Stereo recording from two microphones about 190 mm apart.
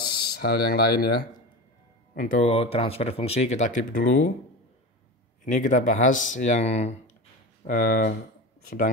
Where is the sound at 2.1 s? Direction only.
45° left (ahead or behind).